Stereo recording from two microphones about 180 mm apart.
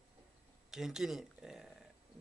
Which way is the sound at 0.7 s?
5° right (ahead or behind).